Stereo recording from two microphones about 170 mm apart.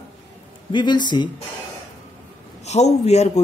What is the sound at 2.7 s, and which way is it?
Speech, 40° left (ahead or behind).